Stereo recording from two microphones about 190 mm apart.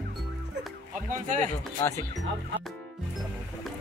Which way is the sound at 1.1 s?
40° right (ahead or behind).